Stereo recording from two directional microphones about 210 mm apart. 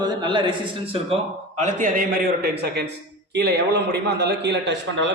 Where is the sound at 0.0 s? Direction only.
20° right (ahead or behind); by 5.1 s 55° right (ahead or behind).